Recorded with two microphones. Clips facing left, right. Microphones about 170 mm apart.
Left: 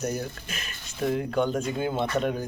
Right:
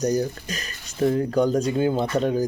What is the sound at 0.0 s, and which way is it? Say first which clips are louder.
Speech: right 8 dB; 35° right (ahead or behind).